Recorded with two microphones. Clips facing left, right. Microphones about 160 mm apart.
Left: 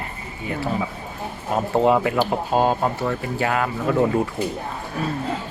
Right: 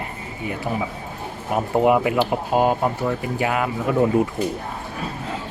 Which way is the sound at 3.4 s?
15° right (ahead or behind).